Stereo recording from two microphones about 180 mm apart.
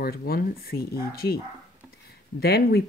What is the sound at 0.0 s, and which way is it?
Speech, 55° left (ahead or behind).